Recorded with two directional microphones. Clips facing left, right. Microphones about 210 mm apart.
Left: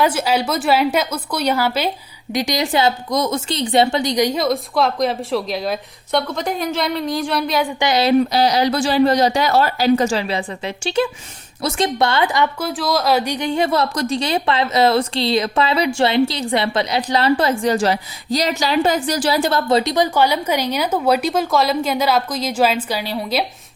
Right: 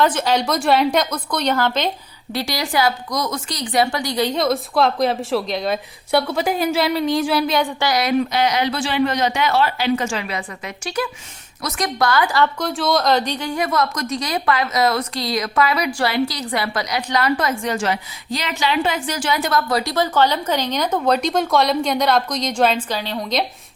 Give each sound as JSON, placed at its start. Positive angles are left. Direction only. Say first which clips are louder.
{"t": 0.0, "sound": "a woman's voice", "louder": "even", "side_deg": 10}
{"t": 4.4, "sound": "a woman's voice", "louder": "even", "side_deg": 0}
{"t": 7.8, "sound": "a woman's voice", "louder": "left 4 dB", "side_deg": 25}
{"t": 12.5, "sound": "a woman's voice", "louder": "right 1 dB", "side_deg": 5}
{"t": 13.4, "sound": "a woman's voice", "louder": "left 3 dB", "side_deg": 25}